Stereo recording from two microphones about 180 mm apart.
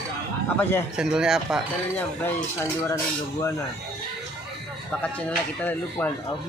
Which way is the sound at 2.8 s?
15° left (ahead or behind).